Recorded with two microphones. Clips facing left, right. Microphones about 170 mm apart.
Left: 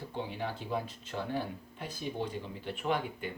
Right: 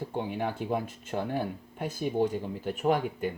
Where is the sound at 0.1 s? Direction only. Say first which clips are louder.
Right 3 dB; 50° right (ahead or behind).